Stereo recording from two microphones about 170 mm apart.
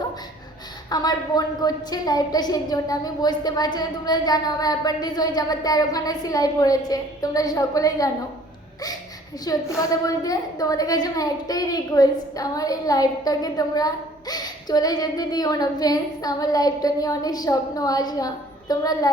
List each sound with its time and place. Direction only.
0.9 s a woman's voice: 25° left (ahead or behind)
9.4 s a woman's voice: 20° left (ahead or behind)